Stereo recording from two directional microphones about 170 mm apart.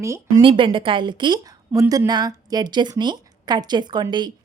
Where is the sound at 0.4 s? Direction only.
30° right (ahead or behind).